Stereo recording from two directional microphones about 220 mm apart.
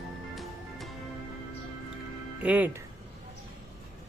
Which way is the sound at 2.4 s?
5° right (ahead or behind).